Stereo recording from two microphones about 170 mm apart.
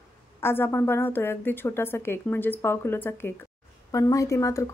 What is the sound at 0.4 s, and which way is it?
A woman's voice, 15° left (ahead or behind).